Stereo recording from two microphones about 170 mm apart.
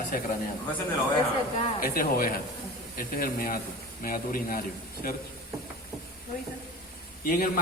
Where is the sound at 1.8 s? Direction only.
60° left (ahead or behind).